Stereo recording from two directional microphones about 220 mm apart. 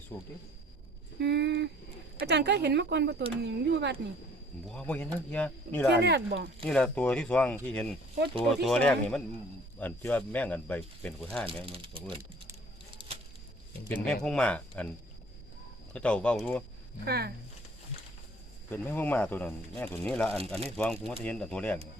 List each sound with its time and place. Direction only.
1.2 s speech: 50° right (ahead or behind)
4.6 s speech: 5° left (ahead or behind)
6.0 s speech: 50° right (ahead or behind)
6.7 s speech: 5° left (ahead or behind)
11.6 s speech: 25° right (ahead or behind)
13.0 s a sound: 20° right (ahead or behind)
13.8 s speech: 5° left (ahead or behind)
15.9 s speech: 5° left (ahead or behind)
17.1 s speech: 45° right (ahead or behind)
18.7 s speech: 10° left (ahead or behind)